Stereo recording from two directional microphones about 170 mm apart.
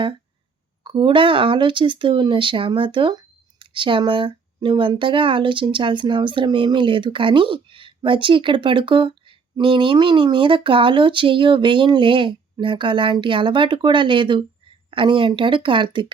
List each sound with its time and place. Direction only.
0.9 s speech: 30° right (ahead or behind)